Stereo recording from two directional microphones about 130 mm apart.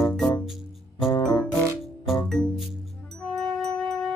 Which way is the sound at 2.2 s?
Centre (ahead or behind).